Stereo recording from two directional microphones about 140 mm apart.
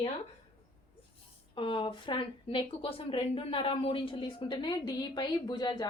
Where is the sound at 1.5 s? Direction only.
35° left (ahead or behind).